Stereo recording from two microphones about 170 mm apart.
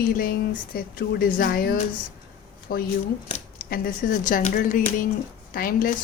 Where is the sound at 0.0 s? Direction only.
55° left (ahead or behind).